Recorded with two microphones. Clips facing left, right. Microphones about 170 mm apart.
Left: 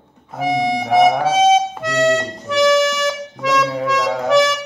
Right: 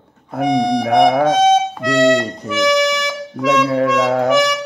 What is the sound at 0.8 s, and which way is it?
Speech, 60° right (ahead or behind).